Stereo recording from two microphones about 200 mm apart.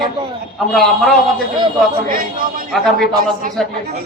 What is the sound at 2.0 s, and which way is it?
Speech, 45° right (ahead or behind).